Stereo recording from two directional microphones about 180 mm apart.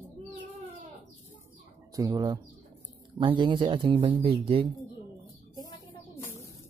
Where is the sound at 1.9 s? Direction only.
20° right (ahead or behind).